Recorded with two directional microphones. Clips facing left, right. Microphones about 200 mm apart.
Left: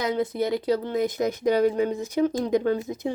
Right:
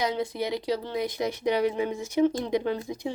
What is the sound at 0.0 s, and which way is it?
Speech, 50° left (ahead or behind).